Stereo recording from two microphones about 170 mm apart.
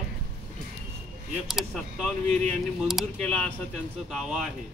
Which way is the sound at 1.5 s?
Centre (ahead or behind).